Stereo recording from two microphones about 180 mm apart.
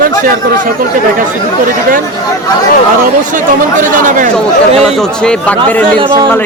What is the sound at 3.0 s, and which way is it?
Speech, 50° right (ahead or behind).